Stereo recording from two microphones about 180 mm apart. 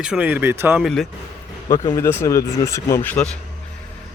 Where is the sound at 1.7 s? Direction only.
20° left (ahead or behind).